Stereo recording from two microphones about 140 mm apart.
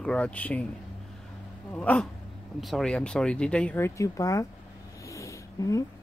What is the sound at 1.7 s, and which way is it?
Speech, 10° left (ahead or behind).